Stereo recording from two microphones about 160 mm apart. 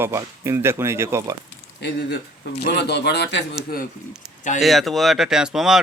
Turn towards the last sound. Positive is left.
turn(degrees=-5)  # may be behind; listen again after turning